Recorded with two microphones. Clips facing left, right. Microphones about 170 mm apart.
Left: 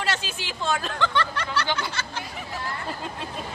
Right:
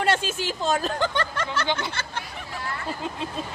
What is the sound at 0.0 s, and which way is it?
Speech, 50° right (ahead or behind).